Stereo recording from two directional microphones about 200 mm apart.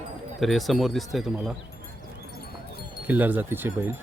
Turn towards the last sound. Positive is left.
turn(degrees=-10)  # may be behind; listen again after turning